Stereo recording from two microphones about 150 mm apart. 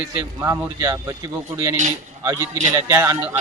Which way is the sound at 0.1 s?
20° right (ahead or behind).